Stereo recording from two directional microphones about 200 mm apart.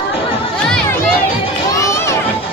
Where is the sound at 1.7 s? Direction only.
15° left (ahead or behind).